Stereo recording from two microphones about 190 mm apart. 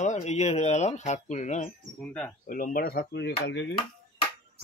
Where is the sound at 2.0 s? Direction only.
5° left (ahead or behind).